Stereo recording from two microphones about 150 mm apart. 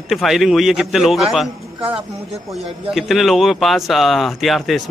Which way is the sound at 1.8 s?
40° right (ahead or behind).